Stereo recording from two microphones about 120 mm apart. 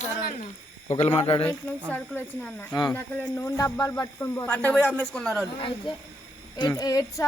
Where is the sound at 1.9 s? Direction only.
15° left (ahead or behind).